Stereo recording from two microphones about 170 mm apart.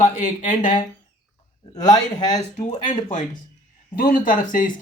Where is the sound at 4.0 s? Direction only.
55° left (ahead or behind).